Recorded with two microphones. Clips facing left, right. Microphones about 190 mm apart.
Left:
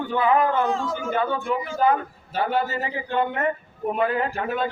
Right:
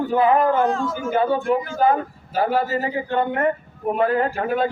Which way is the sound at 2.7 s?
45° right (ahead or behind).